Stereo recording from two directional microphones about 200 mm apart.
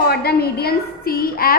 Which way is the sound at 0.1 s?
50° left (ahead or behind).